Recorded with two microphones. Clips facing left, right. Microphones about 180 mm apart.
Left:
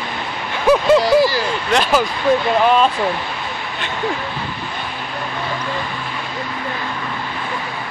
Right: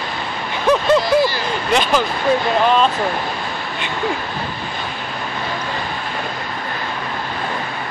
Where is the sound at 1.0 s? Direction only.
35° left (ahead or behind).